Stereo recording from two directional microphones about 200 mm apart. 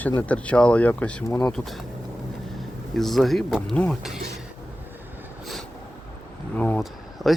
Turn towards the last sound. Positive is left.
turn(degrees=5)  # may be behind; listen again after turning